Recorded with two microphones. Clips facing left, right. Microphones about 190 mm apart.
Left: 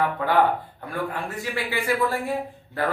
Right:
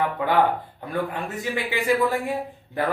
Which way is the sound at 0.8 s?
20° right (ahead or behind).